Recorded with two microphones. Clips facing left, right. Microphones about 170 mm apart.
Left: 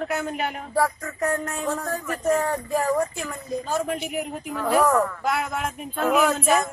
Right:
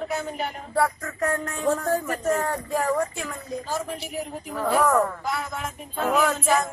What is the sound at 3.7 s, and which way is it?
Speech, 75° left (ahead or behind).